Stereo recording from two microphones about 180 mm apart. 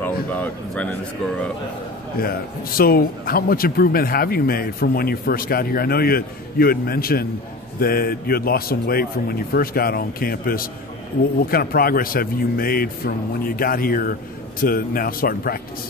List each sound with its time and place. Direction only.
0.0 s speech: 10° left (ahead or behind)
2.8 s speech: 55° left (ahead or behind)